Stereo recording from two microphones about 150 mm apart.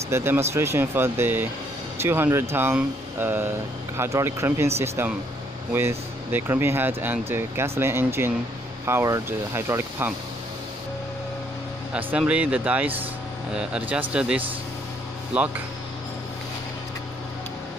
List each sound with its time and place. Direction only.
0.1 s speech: 15° right (ahead or behind)
11.9 s speech: 10° right (ahead or behind)